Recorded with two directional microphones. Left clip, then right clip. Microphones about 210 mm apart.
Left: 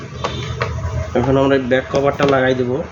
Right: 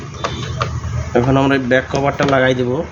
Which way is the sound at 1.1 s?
35° right (ahead or behind).